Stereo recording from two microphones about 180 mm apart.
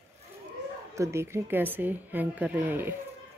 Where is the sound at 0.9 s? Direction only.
15° right (ahead or behind).